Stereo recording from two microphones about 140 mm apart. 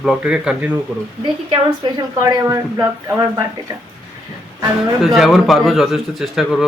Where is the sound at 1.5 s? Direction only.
30° right (ahead or behind).